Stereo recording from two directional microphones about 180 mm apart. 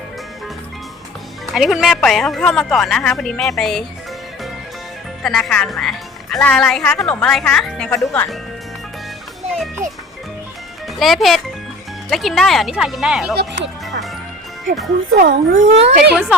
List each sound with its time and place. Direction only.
1.5 s a woman's voice: centre (ahead or behind)
5.2 s a woman's voice: 5° left (ahead or behind)
11.0 s a child's voice: centre (ahead or behind)
13.3 s speech: 70° right (ahead or behind)
15.2 s speech: 50° right (ahead or behind)